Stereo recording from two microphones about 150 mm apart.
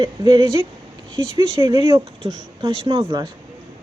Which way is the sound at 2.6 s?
35° right (ahead or behind).